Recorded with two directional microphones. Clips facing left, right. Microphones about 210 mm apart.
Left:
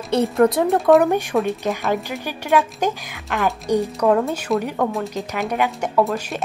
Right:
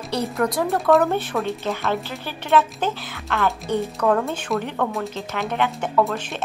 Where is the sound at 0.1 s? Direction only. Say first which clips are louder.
Left 7 dB; 25° left (ahead or behind).